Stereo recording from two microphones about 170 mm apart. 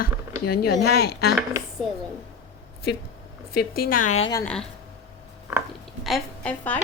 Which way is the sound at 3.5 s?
60° left (ahead or behind).